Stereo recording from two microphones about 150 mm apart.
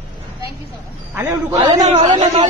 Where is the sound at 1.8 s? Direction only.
45° right (ahead or behind).